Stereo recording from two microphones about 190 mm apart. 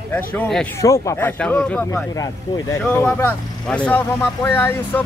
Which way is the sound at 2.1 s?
20° left (ahead or behind).